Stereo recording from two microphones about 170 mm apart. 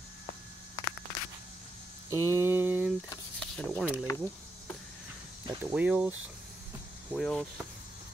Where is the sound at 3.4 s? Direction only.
5° left (ahead or behind).